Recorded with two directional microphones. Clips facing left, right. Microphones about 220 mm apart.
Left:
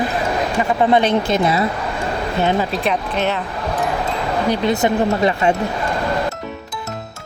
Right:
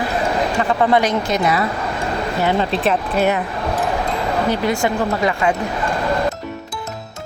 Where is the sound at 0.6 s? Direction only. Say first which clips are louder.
Left 2 dB; 15° left (ahead or behind).